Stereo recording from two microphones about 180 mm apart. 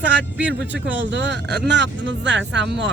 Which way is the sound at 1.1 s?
75° right (ahead or behind).